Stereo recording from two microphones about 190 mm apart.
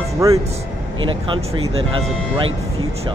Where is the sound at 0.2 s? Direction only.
15° right (ahead or behind).